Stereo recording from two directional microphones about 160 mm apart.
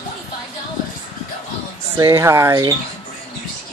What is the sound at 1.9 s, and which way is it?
Speech, 15° right (ahead or behind).